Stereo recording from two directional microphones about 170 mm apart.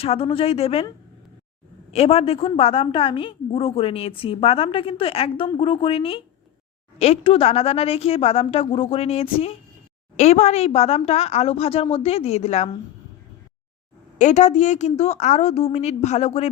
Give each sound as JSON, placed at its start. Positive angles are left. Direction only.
{"t": 0.0, "sound": "a woman's voice", "side_deg": 35}
{"t": 1.9, "sound": "a woman's voice", "side_deg": 35}
{"t": 14.2, "sound": "a woman's voice", "side_deg": 45}